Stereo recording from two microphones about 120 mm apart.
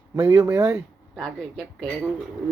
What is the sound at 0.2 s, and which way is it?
Speech, 30° right (ahead or behind).